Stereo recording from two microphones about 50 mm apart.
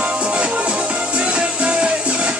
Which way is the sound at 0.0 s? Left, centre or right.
Right.